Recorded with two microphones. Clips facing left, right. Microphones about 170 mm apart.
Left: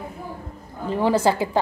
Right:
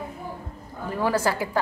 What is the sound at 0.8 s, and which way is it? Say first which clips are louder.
Speech: left 5 dB; 25° left (ahead or behind).